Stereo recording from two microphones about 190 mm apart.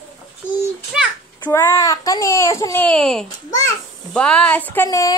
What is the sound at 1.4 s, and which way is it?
A child's voice, 15° left (ahead or behind).